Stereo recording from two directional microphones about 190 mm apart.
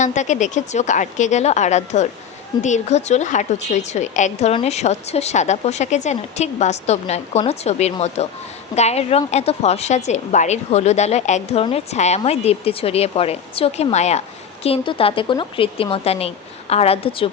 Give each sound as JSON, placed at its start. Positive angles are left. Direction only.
{"t": 0.0, "sound": "a woman's voice", "side_deg": 40}